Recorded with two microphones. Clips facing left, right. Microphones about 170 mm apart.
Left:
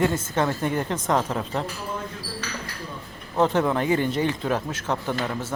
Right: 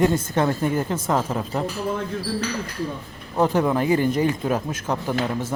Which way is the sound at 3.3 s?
10° right (ahead or behind).